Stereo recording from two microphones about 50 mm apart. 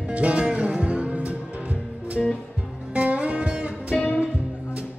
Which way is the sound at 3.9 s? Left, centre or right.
Left.